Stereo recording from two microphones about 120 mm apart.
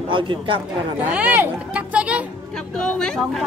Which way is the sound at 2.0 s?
10° right (ahead or behind).